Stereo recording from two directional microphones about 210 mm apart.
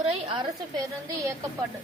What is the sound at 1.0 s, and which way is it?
Speech, 15° right (ahead or behind).